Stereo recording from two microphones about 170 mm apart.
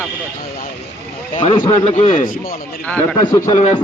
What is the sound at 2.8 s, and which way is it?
Speech, 10° left (ahead or behind).